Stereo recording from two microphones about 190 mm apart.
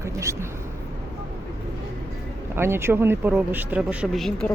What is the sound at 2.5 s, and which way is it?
Speech, 15° right (ahead or behind).